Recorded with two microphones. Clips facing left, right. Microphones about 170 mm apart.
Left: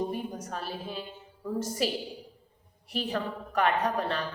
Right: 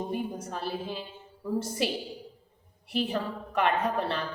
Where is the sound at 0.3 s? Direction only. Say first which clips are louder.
Right 3 dB; 30° right (ahead or behind).